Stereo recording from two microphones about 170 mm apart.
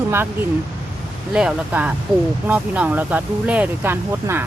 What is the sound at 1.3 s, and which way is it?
Speech, 5° right (ahead or behind).